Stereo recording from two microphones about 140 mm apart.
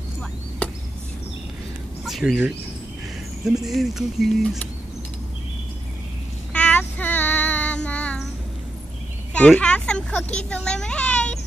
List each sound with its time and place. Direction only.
2.0 s a sound: centre (ahead or behind)
6.5 s child singing: 10° left (ahead or behind)
9.6 s speech: 10° left (ahead or behind)